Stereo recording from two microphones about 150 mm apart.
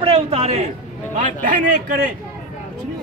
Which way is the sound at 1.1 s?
55° right (ahead or behind).